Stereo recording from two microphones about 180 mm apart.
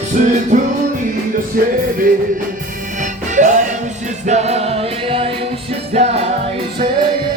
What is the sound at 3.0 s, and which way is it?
Music, 45° right (ahead or behind).